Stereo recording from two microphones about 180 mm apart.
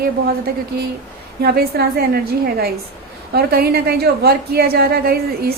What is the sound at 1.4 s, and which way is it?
Speech, 60° right (ahead or behind).